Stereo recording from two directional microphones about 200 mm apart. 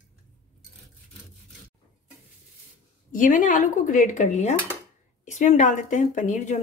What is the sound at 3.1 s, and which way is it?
Speech, 40° left (ahead or behind).